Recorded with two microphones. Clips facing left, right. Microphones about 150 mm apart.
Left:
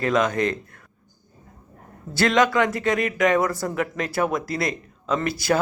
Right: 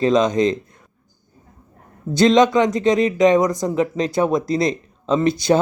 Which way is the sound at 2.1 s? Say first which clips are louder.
Right 6 dB; 20° right (ahead or behind).